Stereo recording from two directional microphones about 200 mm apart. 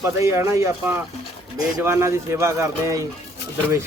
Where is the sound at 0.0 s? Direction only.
15° right (ahead or behind).